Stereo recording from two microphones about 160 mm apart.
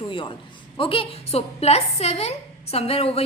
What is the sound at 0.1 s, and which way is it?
A woman's voice, 30° left (ahead or behind).